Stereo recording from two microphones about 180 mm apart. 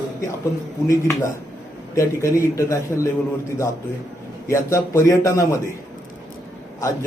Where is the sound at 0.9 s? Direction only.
15° left (ahead or behind).